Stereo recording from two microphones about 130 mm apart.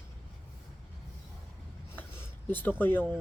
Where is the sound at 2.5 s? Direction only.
15° left (ahead or behind).